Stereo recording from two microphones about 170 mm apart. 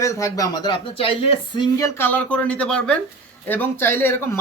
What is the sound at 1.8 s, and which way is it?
Speech, 15° left (ahead or behind).